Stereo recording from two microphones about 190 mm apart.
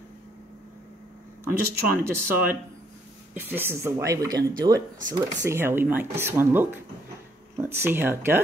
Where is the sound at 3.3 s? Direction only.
10° right (ahead or behind).